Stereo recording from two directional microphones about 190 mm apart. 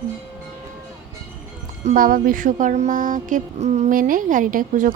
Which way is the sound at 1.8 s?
45° right (ahead or behind).